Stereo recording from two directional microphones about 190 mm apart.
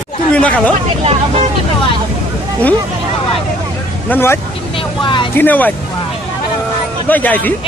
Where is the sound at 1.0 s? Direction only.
30° right (ahead or behind).